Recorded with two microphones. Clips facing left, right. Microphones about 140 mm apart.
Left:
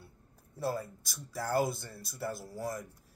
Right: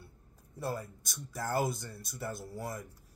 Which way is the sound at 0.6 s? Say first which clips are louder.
Left 3 dB; 5° left (ahead or behind).